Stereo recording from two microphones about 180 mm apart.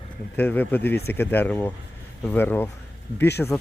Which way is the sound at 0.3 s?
10° left (ahead or behind).